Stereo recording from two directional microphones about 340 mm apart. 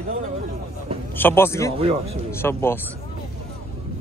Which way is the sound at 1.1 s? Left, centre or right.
Centre.